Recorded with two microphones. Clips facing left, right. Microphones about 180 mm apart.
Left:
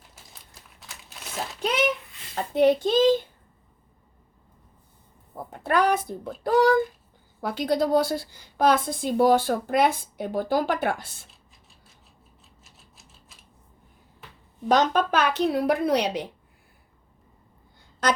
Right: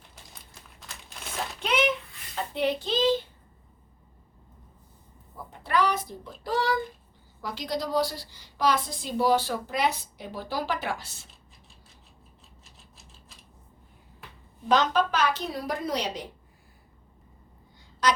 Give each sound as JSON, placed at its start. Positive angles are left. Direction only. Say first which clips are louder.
{"t": 0.8, "sound": "crumpling", "louder": "even", "side_deg": 0}
{"t": 2.3, "sound": "a woman's voice", "louder": "left 8 dB", "side_deg": 45}
{"t": 5.5, "sound": "a woman's voice", "louder": "left 4 dB", "side_deg": 50}
{"t": 14.7, "sound": "speech", "louder": "left 2 dB", "side_deg": 50}